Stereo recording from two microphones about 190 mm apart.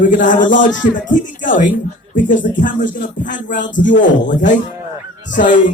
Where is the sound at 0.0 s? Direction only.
45° left (ahead or behind).